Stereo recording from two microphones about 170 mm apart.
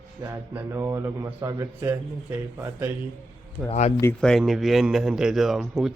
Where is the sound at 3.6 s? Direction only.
15° right (ahead or behind).